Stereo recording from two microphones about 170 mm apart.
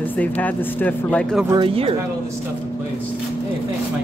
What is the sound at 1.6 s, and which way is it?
Speech, 35° right (ahead or behind).